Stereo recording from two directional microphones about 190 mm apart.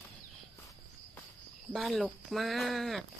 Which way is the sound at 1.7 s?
Centre (ahead or behind).